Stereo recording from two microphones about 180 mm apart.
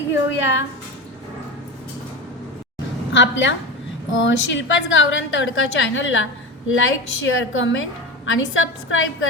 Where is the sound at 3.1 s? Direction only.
90° left.